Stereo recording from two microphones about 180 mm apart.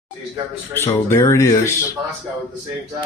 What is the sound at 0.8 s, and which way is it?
Speech, 15° left (ahead or behind).